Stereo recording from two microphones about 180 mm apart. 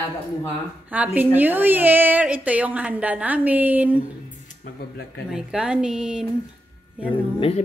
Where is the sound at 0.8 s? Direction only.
10° right (ahead or behind).